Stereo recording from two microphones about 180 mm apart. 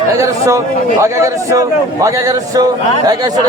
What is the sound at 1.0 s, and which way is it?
A man's voice, 15° right (ahead or behind).